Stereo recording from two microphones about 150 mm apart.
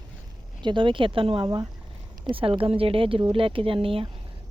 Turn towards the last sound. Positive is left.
turn(degrees=-40)  # may be behind; listen again after turning